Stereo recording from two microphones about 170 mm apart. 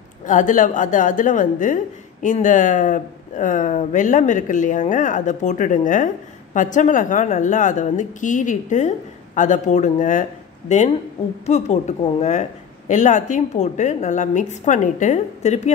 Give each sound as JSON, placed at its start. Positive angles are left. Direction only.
{"t": 0.3, "sound": "speech", "side_deg": 50}